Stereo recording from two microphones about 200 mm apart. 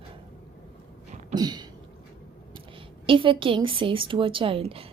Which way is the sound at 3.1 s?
25° right (ahead or behind).